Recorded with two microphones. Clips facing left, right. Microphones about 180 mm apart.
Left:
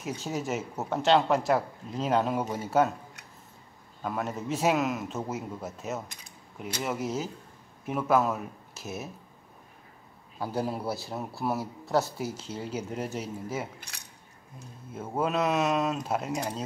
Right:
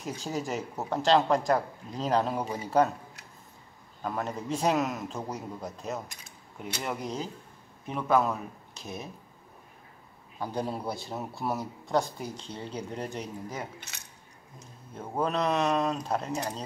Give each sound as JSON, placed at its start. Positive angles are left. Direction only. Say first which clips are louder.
{"t": 0.0, "sound": "a man's voice", "louder": "left 1 dB", "side_deg": 0}
{"t": 10.4, "sound": "a man's voice", "louder": "left 1 dB", "side_deg": 5}